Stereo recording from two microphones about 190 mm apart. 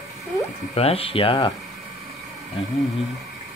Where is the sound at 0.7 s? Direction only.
30° left (ahead or behind).